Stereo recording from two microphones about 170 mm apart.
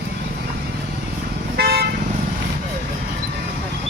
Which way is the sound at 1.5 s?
65° right (ahead or behind).